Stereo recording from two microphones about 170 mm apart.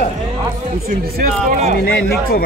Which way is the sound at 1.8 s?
65° left (ahead or behind).